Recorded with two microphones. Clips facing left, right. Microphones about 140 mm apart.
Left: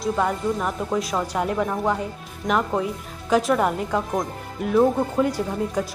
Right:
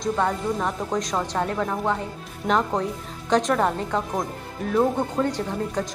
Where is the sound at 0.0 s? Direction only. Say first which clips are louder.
Left 1 dB; 5° left (ahead or behind).